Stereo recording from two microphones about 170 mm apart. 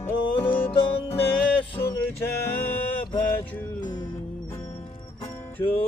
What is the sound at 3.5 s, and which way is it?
Music, 10° left (ahead or behind).